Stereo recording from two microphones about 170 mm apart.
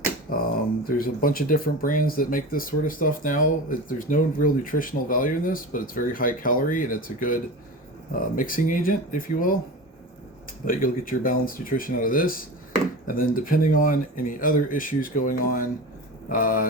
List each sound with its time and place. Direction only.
0.3 s a sound: 55° left (ahead or behind)
0.9 s speech: 55° left (ahead or behind)
10.7 s speech: 55° left (ahead or behind)